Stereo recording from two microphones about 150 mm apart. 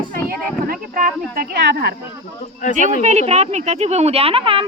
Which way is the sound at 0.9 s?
70° right (ahead or behind).